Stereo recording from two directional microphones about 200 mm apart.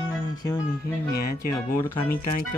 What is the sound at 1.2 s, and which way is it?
Speech, 50° left (ahead or behind).